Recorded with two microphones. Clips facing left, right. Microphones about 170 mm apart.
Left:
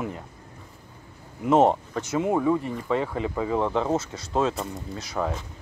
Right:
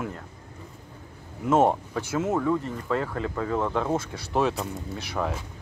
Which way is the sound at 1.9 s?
Centre (ahead or behind).